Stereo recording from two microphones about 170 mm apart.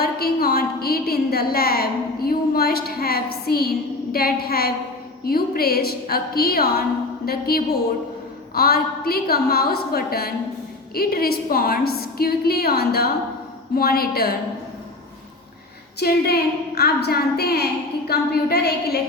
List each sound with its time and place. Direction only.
0.0 s a sound: 65° left (ahead or behind)
4.1 s a woman's voice: 65° left (ahead or behind)
16.0 s a woman's voice: 70° left (ahead or behind)